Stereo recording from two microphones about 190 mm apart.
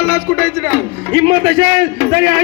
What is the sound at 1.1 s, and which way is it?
A man's voice, 65° right (ahead or behind).